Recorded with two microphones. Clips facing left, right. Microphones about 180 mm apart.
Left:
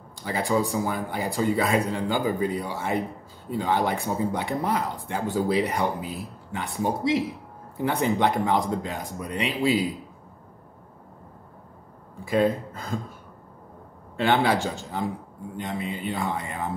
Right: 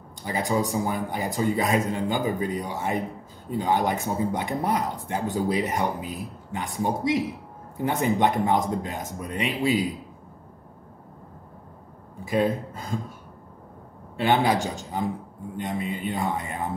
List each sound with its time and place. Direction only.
0.2 s speech: 20° right (ahead or behind)
12.3 s speech: 20° right (ahead or behind)
14.2 s speech: 15° right (ahead or behind)